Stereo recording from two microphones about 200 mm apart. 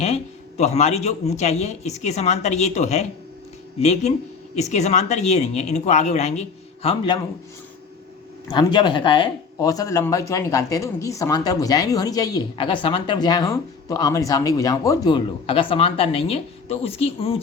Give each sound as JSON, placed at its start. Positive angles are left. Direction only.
{"t": 0.0, "sound": "speech", "side_deg": 35}
{"t": 6.8, "sound": "speech", "side_deg": 25}
{"t": 8.4, "sound": "speech", "side_deg": 20}